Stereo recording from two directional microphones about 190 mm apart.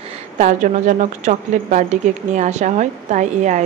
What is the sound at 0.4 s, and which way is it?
A woman's voice, 40° right (ahead or behind).